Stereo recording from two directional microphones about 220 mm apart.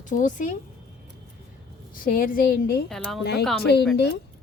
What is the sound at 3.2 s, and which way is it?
A woman's voice, 45° left (ahead or behind).